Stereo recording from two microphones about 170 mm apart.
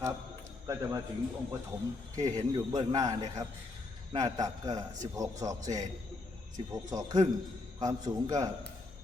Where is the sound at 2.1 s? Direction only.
20° right (ahead or behind).